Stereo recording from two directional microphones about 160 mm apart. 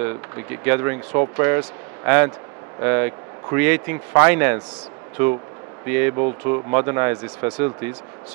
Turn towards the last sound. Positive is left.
turn(degrees=-10)  # may be behind; listen again after turning